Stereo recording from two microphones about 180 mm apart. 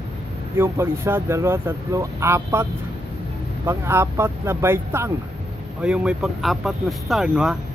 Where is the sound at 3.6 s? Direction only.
15° right (ahead or behind).